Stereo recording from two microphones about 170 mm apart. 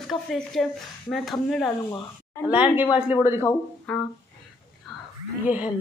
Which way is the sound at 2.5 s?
10° right (ahead or behind).